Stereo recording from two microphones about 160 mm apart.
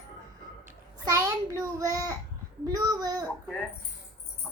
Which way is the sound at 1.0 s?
20° right (ahead or behind).